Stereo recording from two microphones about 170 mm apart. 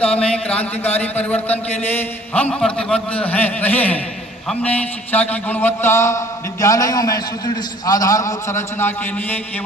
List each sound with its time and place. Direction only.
0.0 s mantra: 5° left (ahead or behind)